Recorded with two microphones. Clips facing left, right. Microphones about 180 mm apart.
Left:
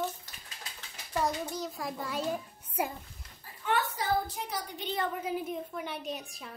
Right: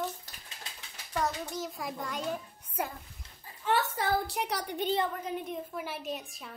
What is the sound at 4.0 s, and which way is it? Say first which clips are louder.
Speech: right 1 dB; 70° right (ahead or behind).